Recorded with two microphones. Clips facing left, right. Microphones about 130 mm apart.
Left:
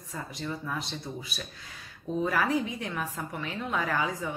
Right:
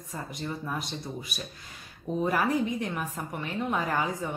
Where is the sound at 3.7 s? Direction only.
15° right (ahead or behind).